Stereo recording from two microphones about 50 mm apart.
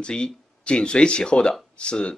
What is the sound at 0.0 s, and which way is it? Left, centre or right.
Speech, centre.